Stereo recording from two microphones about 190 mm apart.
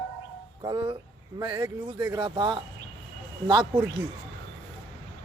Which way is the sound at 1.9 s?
20° right (ahead or behind).